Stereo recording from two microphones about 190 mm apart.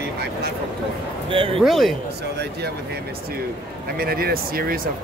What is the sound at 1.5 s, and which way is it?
Speech, centre (ahead or behind).